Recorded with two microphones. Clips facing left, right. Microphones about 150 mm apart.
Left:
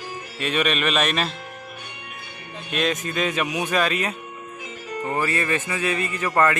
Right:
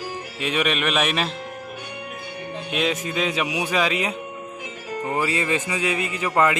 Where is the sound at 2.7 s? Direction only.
10° right (ahead or behind).